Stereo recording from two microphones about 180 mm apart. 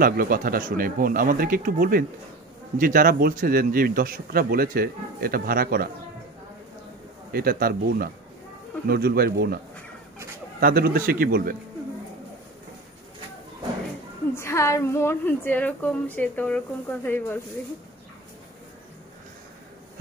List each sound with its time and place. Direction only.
0.0 s speech: 50° right (ahead or behind)
7.3 s a man's voice: 55° right (ahead or behind)
10.6 s a man's voice: 55° right (ahead or behind)
14.3 s a woman's voice: 15° left (ahead or behind)